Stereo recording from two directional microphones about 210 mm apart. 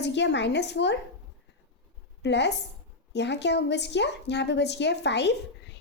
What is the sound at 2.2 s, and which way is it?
A woman's voice, 55° left (ahead or behind).